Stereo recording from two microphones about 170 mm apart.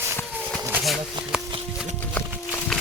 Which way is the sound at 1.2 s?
25° right (ahead or behind).